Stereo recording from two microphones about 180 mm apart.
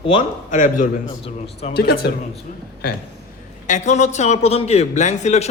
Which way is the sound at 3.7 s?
40° left (ahead or behind).